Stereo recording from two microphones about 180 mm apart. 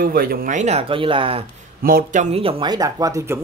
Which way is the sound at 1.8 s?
50° right (ahead or behind).